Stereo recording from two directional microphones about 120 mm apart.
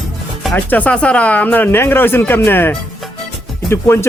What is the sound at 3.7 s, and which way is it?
Music, 20° left (ahead or behind).